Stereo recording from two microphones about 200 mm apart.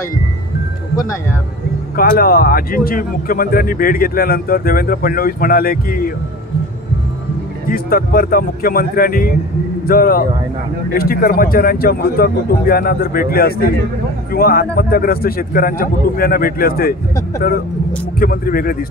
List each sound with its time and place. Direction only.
2.0 s a man's voice: 45° left (ahead or behind)
7.6 s a man's voice: 45° left (ahead or behind)
18.2 s a man's voice: 45° left (ahead or behind)